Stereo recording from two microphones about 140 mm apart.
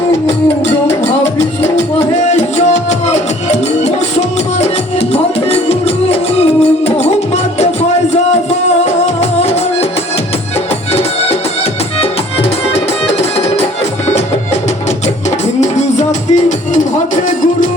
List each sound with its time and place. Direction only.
4.6 s music: 50° left (ahead or behind)
16.0 s music: 60° left (ahead or behind)